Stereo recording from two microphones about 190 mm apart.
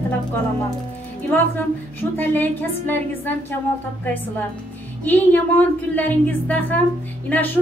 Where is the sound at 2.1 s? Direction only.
10° left (ahead or behind).